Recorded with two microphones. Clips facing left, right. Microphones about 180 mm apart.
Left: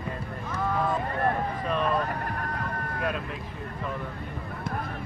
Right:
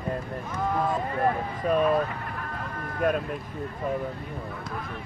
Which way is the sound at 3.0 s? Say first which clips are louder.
Right 7 dB; 45° right (ahead or behind).